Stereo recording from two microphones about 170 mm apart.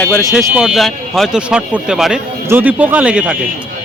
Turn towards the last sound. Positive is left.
turn(degrees=-5)  # may be behind; listen again after turning